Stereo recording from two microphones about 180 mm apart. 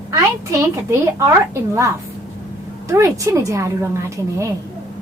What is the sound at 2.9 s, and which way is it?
A woman's voice, 15° right (ahead or behind).